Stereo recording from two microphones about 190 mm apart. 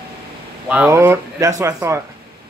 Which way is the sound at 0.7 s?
10° right (ahead or behind).